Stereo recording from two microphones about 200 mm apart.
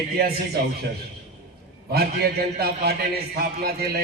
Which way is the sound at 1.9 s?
50° right (ahead or behind).